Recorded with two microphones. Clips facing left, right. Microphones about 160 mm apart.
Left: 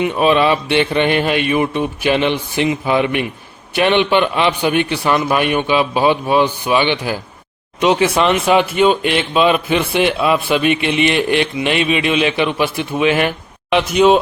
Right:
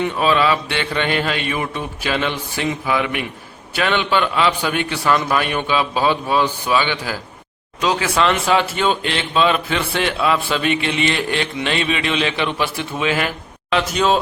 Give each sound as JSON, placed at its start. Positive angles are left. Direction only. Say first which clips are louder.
{"t": 0.0, "sound": "a man's voice", "louder": "left 4 dB", "side_deg": 20}